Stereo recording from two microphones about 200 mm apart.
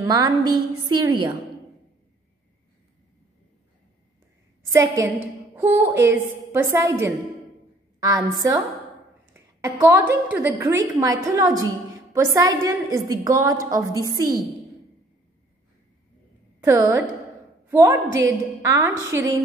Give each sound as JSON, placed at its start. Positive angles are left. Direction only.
{"t": 0.0, "sound": "a woman's voice", "side_deg": -20}
{"t": 4.7, "sound": "a woman's voice", "side_deg": -15}
{"t": 9.3, "sound": "a sound", "side_deg": -15}
{"t": 10.3, "sound": "a woman's voice", "side_deg": -10}
{"t": 16.6, "sound": "a woman's voice", "side_deg": -15}